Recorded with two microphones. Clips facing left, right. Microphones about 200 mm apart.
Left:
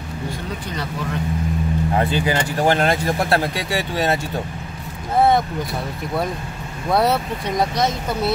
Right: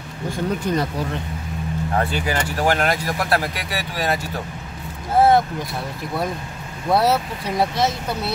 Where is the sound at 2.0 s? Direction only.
20° left (ahead or behind).